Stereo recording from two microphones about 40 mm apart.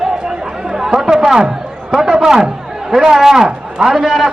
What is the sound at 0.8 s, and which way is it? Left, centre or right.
Chatter, centre.